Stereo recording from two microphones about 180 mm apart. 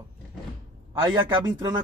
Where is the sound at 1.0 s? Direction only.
25° right (ahead or behind).